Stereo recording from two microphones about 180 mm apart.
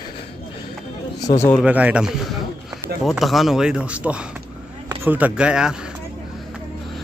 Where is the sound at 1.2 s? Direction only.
20° left (ahead or behind).